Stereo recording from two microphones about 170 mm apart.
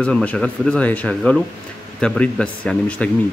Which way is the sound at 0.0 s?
5° left (ahead or behind).